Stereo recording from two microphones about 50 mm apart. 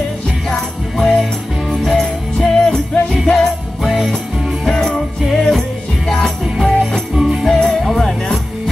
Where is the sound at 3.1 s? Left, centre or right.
Centre.